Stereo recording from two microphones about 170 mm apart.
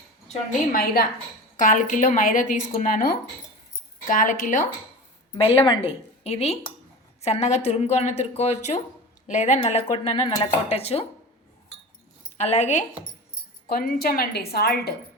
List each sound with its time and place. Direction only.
0.7 s a woman's voice: 60° left (ahead or behind)
5.4 s a woman's voice: 30° left (ahead or behind)
12.4 s a woman's voice: 40° left (ahead or behind)
13.7 s a woman's voice: 60° left (ahead or behind)